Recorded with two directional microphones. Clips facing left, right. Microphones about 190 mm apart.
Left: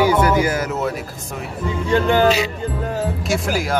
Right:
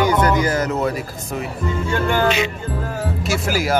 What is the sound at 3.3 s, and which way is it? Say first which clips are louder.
Speech: right 2 dB; 5° right (ahead or behind).